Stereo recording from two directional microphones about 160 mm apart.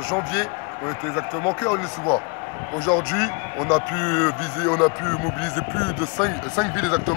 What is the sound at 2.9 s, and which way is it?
Speech, 5° left (ahead or behind).